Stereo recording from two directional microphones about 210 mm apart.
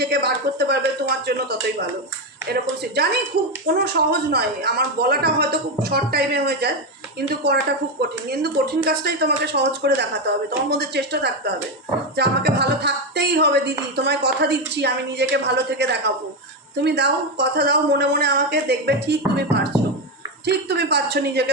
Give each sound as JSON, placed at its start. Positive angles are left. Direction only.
{"t": 0.0, "sound": "speech", "side_deg": -50}
{"t": 2.5, "sound": "speech", "side_deg": -50}